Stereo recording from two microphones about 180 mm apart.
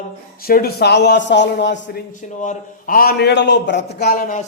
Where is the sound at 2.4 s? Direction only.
50° left (ahead or behind).